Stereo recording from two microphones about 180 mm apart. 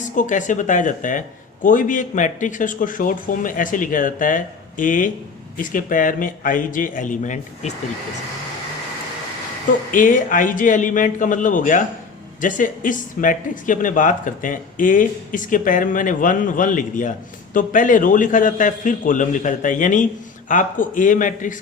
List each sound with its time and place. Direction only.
0.0 s speech: 45° left (ahead or behind)
9.9 s speech: 45° left (ahead or behind)